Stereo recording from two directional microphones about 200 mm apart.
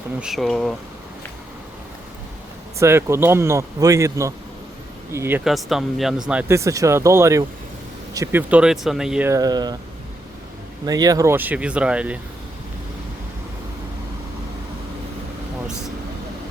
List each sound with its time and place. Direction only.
0.2 s speech: centre (ahead or behind)
2.7 s a man's voice: 15° right (ahead or behind)
5.5 s a man's voice: centre (ahead or behind)
9.3 s speech: 20° right (ahead or behind)
10.8 s a man's voice: 20° right (ahead or behind)